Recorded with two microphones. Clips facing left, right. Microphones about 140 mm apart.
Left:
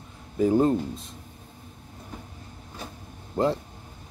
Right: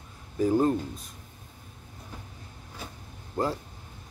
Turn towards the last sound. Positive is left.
turn(degrees=25)  # may be behind; listen again after turning